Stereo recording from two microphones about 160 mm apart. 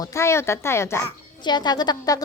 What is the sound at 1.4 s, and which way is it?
Speech, 25° left (ahead or behind).